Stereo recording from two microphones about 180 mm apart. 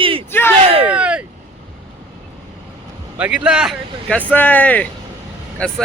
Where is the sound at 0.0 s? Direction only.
30° right (ahead or behind).